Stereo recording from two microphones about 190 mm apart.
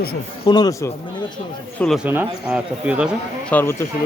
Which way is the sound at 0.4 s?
20° left (ahead or behind).